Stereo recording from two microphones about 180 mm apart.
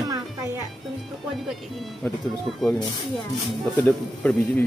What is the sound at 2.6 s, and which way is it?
Speech, 5° left (ahead or behind).